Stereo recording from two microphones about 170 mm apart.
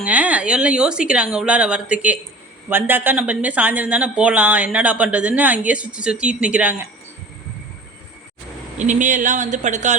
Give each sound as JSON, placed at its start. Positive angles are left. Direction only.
{"t": 0.0, "sound": "speech", "side_deg": -10}
{"t": 8.8, "sound": "speech", "side_deg": -45}